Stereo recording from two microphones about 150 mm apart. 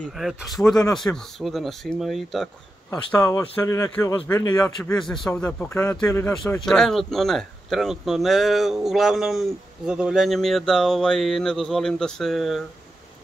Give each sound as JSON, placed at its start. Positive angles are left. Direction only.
{"t": 0.1, "sound": "speech", "side_deg": 0}
{"t": 3.2, "sound": "speech", "side_deg": 20}
{"t": 4.9, "sound": "a man's voice", "side_deg": 5}
{"t": 6.6, "sound": "speech", "side_deg": 0}